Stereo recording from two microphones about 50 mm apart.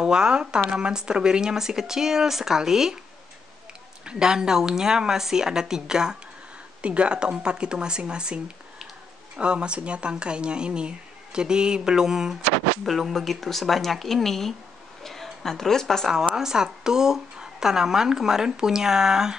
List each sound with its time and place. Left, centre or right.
0.0 s a woman's voice: centre
4.0 s a woman's voice: centre
6.8 s speech: right
9.4 s a woman's voice: right; by 16.1 s centre
16.1 s a woman's voice: centre